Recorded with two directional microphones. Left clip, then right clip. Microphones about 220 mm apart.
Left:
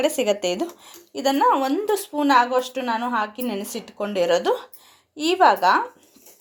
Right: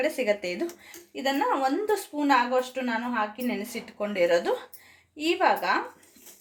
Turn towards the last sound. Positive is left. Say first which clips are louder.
# left 7 dB
turn(degrees=30)  # may be behind; listen again after turning